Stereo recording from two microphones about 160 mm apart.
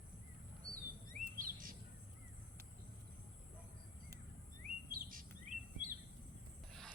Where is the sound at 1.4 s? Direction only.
60° right (ahead or behind).